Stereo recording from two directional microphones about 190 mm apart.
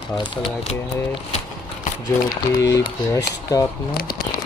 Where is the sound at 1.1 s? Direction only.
35° left (ahead or behind).